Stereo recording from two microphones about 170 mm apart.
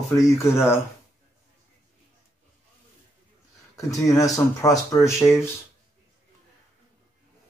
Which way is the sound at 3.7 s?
20° left (ahead or behind).